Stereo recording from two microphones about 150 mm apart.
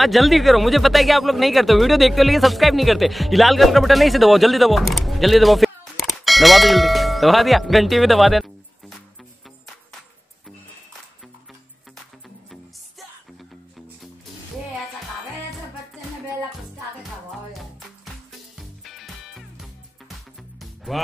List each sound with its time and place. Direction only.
0.0 s speech: centre (ahead or behind)
17.3 s music: centre (ahead or behind)
20.9 s speech: centre (ahead or behind)